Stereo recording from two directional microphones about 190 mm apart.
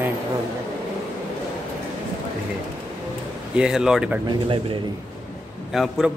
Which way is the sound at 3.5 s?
5° right (ahead or behind).